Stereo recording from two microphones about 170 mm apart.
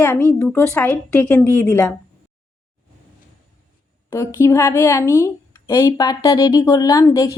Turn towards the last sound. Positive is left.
turn(degrees=20)  # may be behind; listen again after turning